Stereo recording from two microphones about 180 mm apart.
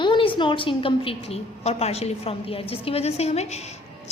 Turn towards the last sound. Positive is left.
turn(degrees=40)  # may be behind; listen again after turning